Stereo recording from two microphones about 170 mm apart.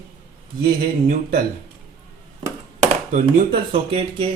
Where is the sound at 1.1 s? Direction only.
60° right (ahead or behind).